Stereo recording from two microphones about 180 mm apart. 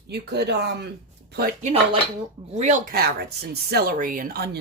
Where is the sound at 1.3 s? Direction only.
55° right (ahead or behind).